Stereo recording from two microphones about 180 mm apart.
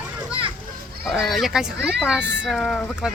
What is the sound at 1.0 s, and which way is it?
Speech, centre (ahead or behind).